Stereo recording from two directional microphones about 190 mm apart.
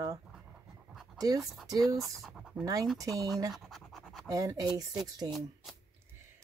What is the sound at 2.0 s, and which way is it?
Speech, centre (ahead or behind).